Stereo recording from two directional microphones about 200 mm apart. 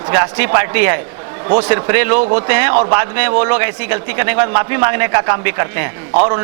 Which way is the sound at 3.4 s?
15° right (ahead or behind).